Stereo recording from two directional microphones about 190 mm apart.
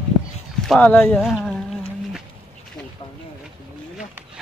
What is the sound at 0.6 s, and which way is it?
Speech, 5° left (ahead or behind).